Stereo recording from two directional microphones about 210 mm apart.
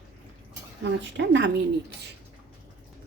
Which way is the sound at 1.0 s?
60° right (ahead or behind).